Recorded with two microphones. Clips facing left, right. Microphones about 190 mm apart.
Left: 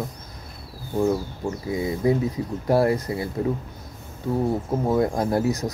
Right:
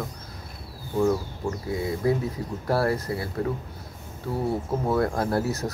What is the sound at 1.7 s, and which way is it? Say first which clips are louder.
Speech: left 3 dB; 20° left (ahead or behind).